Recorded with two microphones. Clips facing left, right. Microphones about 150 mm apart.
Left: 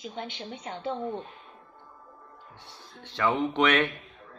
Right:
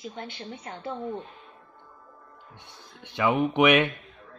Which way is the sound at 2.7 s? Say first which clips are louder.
Even; 15° right (ahead or behind).